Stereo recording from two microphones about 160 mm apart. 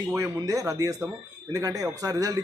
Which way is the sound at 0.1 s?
20° right (ahead or behind).